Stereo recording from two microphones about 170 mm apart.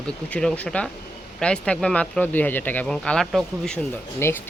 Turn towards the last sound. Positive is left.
turn(degrees=15)  # may be behind; listen again after turning